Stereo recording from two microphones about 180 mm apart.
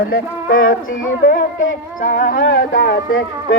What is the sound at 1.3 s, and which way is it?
Music, 75° left (ahead or behind).